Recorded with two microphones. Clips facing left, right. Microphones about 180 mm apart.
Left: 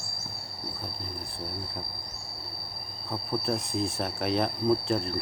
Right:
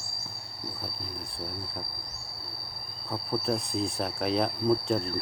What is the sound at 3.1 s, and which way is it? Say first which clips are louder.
Speech: even; centre (ahead or behind).